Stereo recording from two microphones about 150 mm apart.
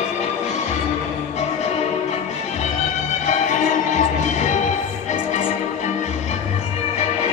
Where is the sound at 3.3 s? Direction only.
55° left (ahead or behind).